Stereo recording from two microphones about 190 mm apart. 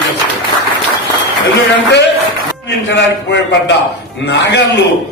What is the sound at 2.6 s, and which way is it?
A man's voice, 70° left (ahead or behind).